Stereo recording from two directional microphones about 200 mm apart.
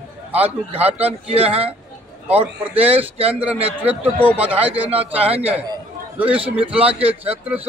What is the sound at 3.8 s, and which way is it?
Speech, 10° right (ahead or behind).